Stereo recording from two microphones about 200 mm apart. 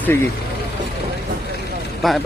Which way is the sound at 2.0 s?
Centre (ahead or behind).